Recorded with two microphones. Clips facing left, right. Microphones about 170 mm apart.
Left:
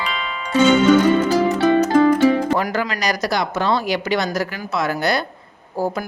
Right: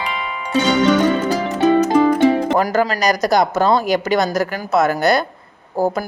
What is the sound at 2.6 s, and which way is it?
Speech, 40° right (ahead or behind).